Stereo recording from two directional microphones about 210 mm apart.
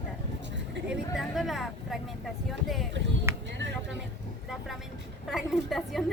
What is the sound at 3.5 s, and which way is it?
Speech, 60° right (ahead or behind).